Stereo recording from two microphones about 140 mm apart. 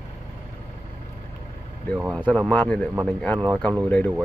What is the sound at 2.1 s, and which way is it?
Speech, 5° left (ahead or behind).